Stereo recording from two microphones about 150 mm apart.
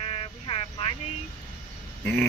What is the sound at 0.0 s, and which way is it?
Vehicle, 40° left (ahead or behind).